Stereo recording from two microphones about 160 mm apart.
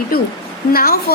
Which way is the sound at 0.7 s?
70° left (ahead or behind).